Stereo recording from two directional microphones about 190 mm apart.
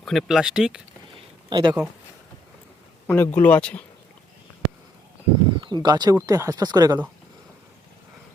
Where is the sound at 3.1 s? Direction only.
10° left (ahead or behind).